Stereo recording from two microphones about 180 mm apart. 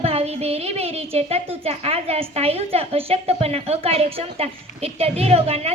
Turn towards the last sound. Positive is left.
turn(degrees=-35)  # may be behind; listen again after turning